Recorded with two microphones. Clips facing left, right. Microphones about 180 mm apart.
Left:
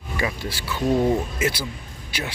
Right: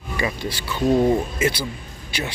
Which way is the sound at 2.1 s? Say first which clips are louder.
Right 2 dB; 5° left (ahead or behind).